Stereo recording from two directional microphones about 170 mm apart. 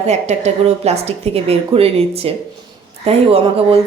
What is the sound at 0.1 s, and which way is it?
A woman's voice, 40° right (ahead or behind).